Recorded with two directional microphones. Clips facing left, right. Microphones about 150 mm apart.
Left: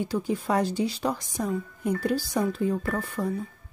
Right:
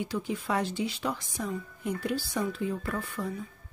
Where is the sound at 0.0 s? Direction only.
40° left (ahead or behind).